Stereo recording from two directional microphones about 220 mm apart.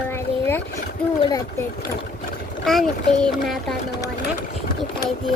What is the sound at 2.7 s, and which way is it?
A child's voice, centre (ahead or behind).